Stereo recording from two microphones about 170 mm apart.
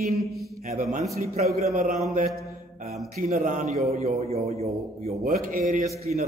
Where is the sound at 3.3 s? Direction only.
45° right (ahead or behind).